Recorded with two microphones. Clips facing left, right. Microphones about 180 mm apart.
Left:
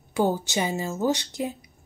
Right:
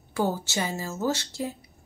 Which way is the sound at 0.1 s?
15° left (ahead or behind).